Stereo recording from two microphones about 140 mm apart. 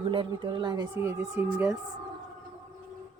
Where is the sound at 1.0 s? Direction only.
20° right (ahead or behind).